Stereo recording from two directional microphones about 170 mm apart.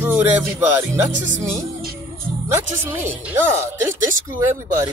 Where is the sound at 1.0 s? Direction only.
45° right (ahead or behind).